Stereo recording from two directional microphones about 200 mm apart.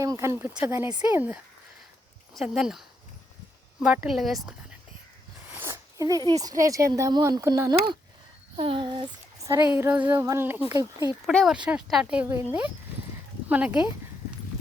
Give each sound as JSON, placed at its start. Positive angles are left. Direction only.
{"t": 0.0, "sound": "female singing", "side_deg": -15}
{"t": 2.3, "sound": "speech", "side_deg": 0}
{"t": 8.5, "sound": "female singing", "side_deg": -25}
{"t": 11.3, "sound": "speech", "side_deg": 5}
{"t": 11.6, "sound": "female singing", "side_deg": -5}